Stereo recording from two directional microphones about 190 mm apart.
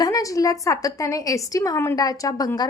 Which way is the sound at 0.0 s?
15° left (ahead or behind).